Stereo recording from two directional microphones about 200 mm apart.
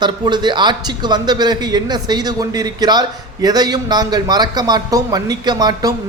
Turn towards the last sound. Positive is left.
turn(degrees=-20)  # may be behind; listen again after turning